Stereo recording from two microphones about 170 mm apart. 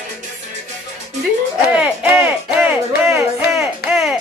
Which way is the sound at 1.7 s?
10° right (ahead or behind).